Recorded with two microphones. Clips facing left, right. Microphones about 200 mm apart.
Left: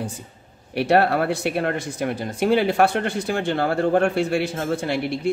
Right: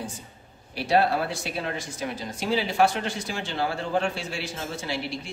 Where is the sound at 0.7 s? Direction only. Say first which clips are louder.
Left 5 dB; 60° left (ahead or behind).